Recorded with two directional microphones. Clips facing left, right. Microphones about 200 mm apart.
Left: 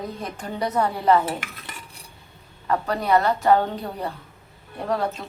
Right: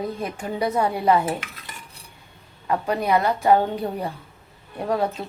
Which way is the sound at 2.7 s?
15° right (ahead or behind).